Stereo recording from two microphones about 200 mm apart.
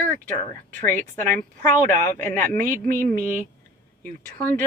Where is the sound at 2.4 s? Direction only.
40° right (ahead or behind).